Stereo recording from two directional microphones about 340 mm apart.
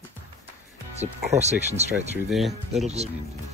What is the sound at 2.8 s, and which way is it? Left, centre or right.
Speech, centre.